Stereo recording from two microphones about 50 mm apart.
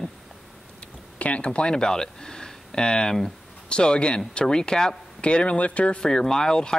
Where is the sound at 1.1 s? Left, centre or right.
Left.